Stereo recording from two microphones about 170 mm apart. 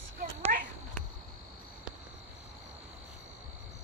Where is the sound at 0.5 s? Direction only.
55° right (ahead or behind).